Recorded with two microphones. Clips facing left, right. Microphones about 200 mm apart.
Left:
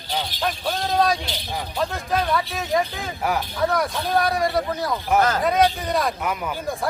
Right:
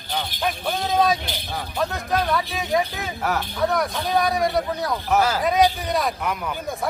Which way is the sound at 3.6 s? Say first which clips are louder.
Even; centre (ahead or behind).